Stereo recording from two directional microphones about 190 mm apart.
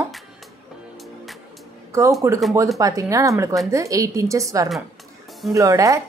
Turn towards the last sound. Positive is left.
turn(degrees=-15)  # may be behind; listen again after turning